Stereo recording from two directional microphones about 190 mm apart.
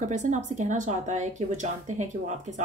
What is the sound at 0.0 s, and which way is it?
A woman's voice, 40° right (ahead or behind).